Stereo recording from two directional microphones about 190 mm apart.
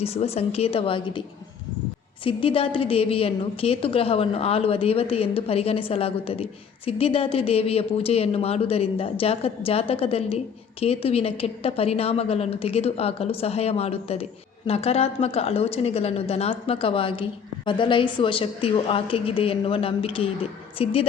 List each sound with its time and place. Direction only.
0.0 s speech: 30° left (ahead or behind)
2.2 s a woman's voice: 30° left (ahead or behind)